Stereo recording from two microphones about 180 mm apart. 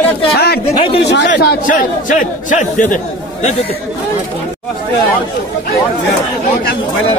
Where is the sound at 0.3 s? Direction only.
65° left (ahead or behind).